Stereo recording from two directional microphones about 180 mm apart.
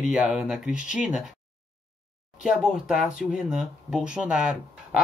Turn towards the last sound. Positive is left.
turn(degrees=-5)  # may be behind; listen again after turning